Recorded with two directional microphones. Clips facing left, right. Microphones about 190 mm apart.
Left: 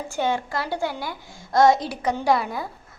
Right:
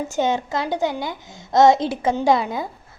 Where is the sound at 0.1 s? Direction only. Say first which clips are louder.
Right 1 dB; 20° right (ahead or behind).